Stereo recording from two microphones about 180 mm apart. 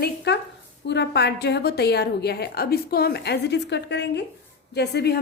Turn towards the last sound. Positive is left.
turn(degrees=65)  # may be behind; listen again after turning